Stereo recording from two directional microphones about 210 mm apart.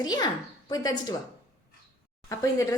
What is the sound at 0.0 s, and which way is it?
Speech, 20° left (ahead or behind).